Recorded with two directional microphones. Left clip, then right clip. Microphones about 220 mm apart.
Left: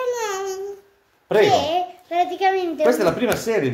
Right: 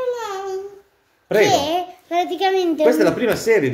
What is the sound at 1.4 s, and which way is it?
A child's voice, 45° right (ahead or behind).